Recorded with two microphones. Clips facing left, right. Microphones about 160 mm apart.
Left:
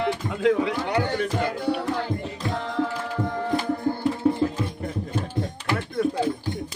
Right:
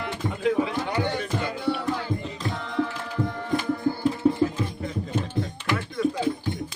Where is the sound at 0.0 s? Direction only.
70° left (ahead or behind).